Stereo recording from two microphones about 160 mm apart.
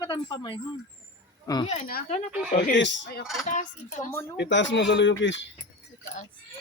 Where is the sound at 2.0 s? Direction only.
45° left (ahead or behind).